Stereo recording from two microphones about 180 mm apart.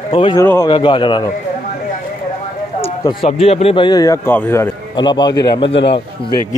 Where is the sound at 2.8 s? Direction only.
30° left (ahead or behind).